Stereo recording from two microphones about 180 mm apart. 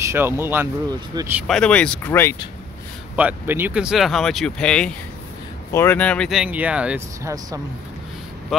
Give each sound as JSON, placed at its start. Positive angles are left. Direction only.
{"t": 0.0, "sound": "speech", "side_deg": -15}
{"t": 1.5, "sound": "speech", "side_deg": 5}
{"t": 3.2, "sound": "speech", "side_deg": -10}